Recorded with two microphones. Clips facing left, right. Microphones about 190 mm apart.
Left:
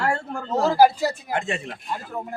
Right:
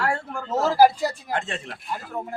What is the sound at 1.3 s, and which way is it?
Speech, 10° left (ahead or behind).